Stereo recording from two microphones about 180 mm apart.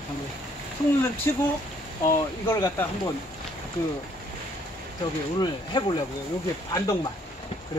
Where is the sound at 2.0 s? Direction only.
15° left (ahead or behind).